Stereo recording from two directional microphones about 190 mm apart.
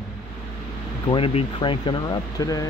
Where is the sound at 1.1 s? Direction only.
25° left (ahead or behind).